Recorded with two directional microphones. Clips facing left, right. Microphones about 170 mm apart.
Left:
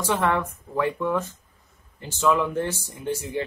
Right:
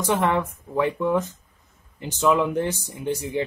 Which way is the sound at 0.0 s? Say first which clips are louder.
Right 2 dB; 15° right (ahead or behind).